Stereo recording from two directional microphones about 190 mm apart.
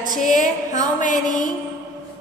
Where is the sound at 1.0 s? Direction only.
45° left (ahead or behind).